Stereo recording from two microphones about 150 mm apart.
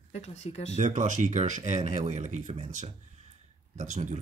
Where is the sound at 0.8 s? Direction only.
55° right (ahead or behind).